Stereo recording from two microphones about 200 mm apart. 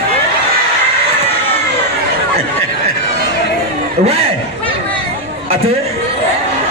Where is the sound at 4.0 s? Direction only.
30° right (ahead or behind).